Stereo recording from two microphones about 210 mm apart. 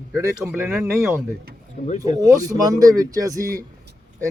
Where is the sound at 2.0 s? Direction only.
15° right (ahead or behind).